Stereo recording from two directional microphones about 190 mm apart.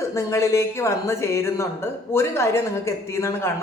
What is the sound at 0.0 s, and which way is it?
A woman's voice, 15° left (ahead or behind).